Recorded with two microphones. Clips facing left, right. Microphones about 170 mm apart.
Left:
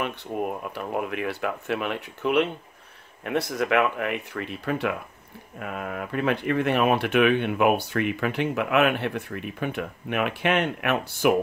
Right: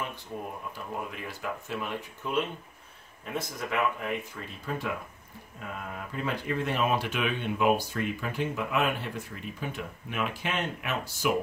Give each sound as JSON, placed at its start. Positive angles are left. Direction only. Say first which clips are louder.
{"t": 0.0, "sound": "speech", "louder": "left 8 dB", "side_deg": 70}